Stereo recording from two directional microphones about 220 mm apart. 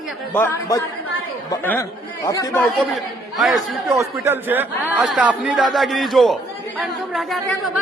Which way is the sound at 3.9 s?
15° right (ahead or behind).